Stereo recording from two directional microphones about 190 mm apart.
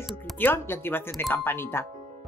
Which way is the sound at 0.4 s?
10° left (ahead or behind).